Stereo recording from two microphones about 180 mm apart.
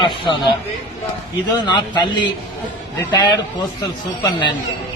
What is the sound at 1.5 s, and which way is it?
Speech, 25° left (ahead or behind).